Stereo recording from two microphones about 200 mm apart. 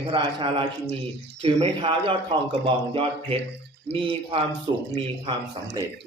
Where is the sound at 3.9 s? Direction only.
25° right (ahead or behind).